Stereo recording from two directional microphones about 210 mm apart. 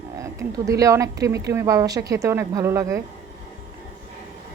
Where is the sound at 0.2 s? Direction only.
15° right (ahead or behind).